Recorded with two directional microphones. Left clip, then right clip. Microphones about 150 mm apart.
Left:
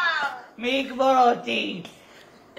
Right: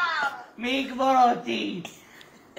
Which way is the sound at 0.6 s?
30° left (ahead or behind).